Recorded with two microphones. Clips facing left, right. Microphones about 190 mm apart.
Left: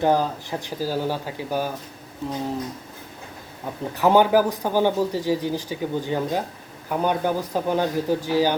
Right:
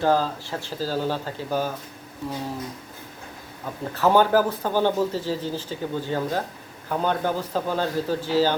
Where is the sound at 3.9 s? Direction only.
15° left (ahead or behind).